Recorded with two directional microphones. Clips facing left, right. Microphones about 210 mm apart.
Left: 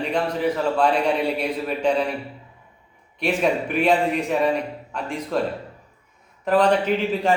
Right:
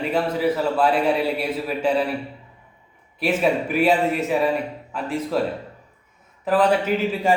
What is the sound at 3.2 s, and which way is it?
A man's voice, 5° right (ahead or behind).